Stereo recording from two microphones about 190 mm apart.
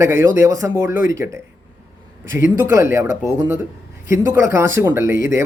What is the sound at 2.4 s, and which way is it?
Speech, 15° right (ahead or behind).